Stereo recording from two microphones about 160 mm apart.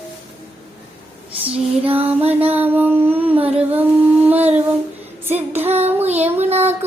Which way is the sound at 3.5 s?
10° right (ahead or behind).